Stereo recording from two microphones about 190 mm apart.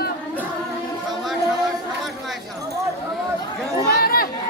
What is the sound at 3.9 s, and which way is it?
Chatter, 50° left (ahead or behind).